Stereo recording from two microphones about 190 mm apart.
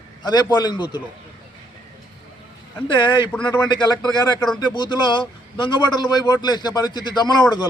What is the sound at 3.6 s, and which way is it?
Speech, 25° left (ahead or behind).